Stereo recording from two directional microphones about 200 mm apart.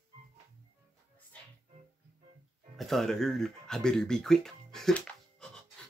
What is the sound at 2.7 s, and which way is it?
Speech, centre (ahead or behind).